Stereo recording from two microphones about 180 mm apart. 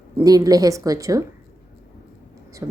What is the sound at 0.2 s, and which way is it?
A woman's voice, 20° right (ahead or behind).